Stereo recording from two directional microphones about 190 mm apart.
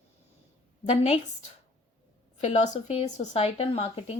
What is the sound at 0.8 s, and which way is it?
Speech, 35° left (ahead or behind).